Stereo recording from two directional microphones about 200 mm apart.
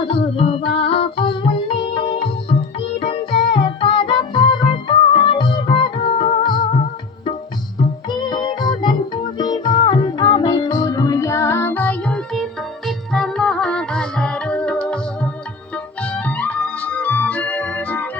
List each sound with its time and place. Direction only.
0.0 s music: 30° left (ahead or behind); by 18.1 s 10° left (ahead or behind)